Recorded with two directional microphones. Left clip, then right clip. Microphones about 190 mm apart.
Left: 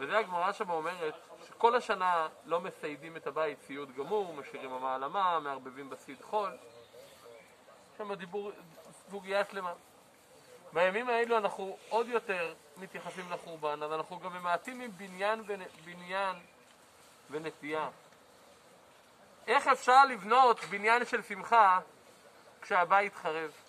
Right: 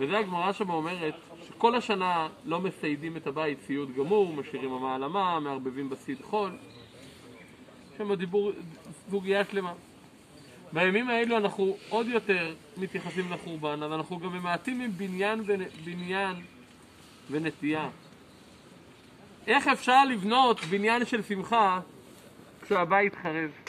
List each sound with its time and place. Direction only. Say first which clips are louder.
0.0 s speech: right 3 dB; centre (ahead or behind)
8.0 s speech: right 10 dB; 5° left (ahead or behind)
19.4 s speech: right 3 dB; centre (ahead or behind)
22.7 s speech: right 3 dB; 15° left (ahead or behind)